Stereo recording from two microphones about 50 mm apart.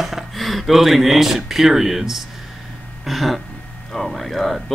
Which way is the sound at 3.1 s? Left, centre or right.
Centre.